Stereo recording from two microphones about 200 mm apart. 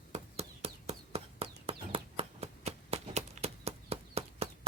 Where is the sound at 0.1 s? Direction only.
30° right (ahead or behind).